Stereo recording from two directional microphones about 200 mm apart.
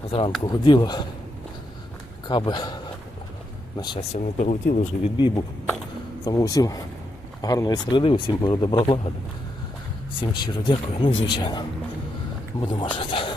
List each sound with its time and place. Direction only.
0.1 s speech: 25° left (ahead or behind)
2.2 s a man's voice: 20° left (ahead or behind)
4.4 s speech: 40° left (ahead or behind)
6.2 s speech: 20° left (ahead or behind)
10.2 s speech: 20° left (ahead or behind)